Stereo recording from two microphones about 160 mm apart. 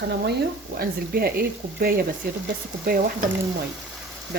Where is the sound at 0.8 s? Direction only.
70° right (ahead or behind).